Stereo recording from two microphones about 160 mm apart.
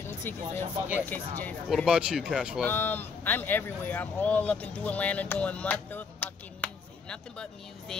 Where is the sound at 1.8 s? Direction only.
5° right (ahead or behind).